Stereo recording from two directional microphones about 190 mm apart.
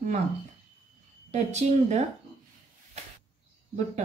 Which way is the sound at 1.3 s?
35° right (ahead or behind).